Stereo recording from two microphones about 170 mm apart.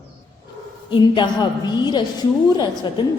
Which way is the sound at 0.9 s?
25° left (ahead or behind).